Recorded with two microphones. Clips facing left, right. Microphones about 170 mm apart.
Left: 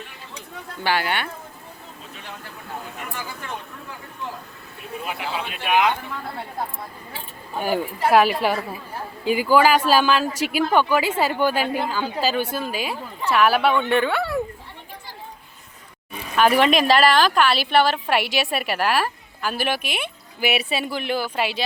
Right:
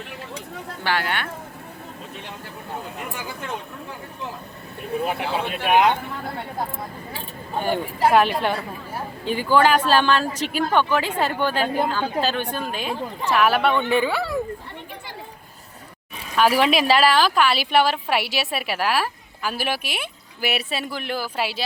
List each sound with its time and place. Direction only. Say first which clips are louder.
0.9 s speech: left 2 dB; 5° left (ahead or behind)
5.0 s speech: right 2 dB; 45° right (ahead or behind)
8.1 s speech: left 4 dB; 5° left (ahead or behind)
16.3 s speech: left 1 dB; 5° right (ahead or behind)